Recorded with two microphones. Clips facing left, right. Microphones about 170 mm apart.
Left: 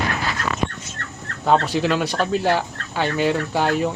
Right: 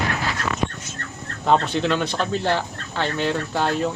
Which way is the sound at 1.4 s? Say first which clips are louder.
Left 1 dB; 5° left (ahead or behind).